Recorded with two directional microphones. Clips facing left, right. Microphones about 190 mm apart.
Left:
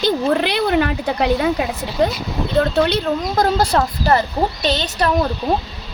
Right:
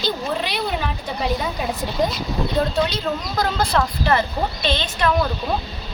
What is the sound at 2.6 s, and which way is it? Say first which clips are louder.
Speech: left 6 dB; 65° left (ahead or behind).